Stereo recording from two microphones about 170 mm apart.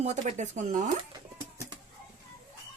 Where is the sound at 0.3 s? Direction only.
45° right (ahead or behind).